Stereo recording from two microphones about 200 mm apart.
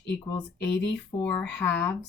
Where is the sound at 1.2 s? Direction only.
5° left (ahead or behind).